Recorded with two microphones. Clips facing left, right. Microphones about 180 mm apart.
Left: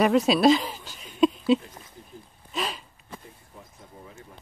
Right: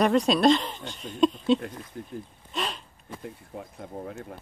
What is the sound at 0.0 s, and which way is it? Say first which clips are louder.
Speech: left 1 dB; 5° left (ahead or behind).